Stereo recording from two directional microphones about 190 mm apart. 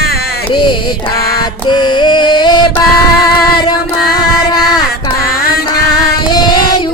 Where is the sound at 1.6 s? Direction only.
25° left (ahead or behind).